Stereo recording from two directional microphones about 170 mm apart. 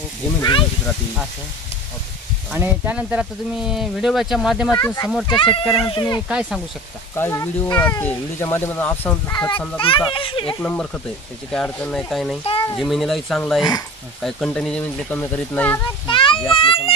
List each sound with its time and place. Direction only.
0.4 s speech: 25° left (ahead or behind)
2.5 s speech: 10° right (ahead or behind)
4.6 s speech: 20° left (ahead or behind)
6.2 s speech: 5° right (ahead or behind)
7.2 s speech: 15° left (ahead or behind)
9.8 s a child's voice: 30° left (ahead or behind)
10.5 s speech: 10° left (ahead or behind)
12.4 s speech: 30° left (ahead or behind)
12.7 s speech: centre (ahead or behind)
16.1 s a child's voice: 30° left (ahead or behind)